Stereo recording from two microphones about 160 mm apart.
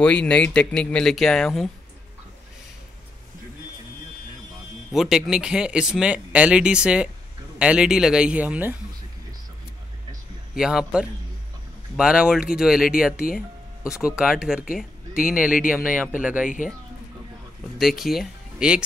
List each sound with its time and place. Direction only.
0.0 s speech: 10° left (ahead or behind)
4.9 s a man's voice: centre (ahead or behind)
10.5 s speech: 5° right (ahead or behind)
13.8 s speech: 5° right (ahead or behind)
15.1 s speech: 60° left (ahead or behind)
16.2 s a man's voice: 10° right (ahead or behind)
17.7 s speech: centre (ahead or behind)